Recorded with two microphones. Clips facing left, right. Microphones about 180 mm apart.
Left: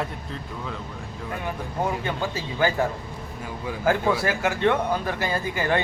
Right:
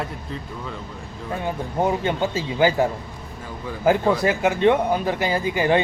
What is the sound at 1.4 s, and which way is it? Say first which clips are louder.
Speech: right 5 dB; 25° right (ahead or behind).